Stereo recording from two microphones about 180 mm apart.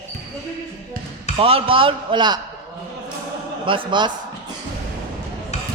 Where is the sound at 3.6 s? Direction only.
30° right (ahead or behind).